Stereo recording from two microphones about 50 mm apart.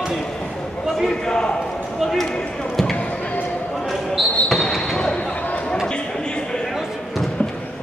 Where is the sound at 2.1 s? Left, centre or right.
Centre.